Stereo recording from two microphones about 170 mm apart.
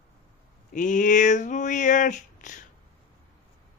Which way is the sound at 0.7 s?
50° left (ahead or behind).